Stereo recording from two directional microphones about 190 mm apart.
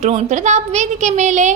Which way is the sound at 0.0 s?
35° right (ahead or behind).